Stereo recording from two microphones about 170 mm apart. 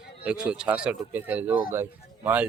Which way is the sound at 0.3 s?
5° right (ahead or behind).